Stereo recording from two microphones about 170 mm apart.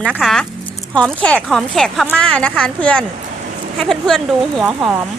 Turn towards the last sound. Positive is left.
turn(degrees=0)  # may be behind; listen again after turning